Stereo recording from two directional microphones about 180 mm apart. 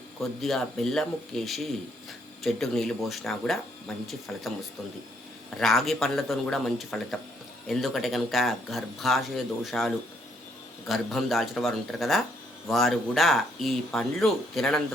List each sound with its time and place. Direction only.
0.4 s speech: centre (ahead or behind)
5.5 s speech: centre (ahead or behind)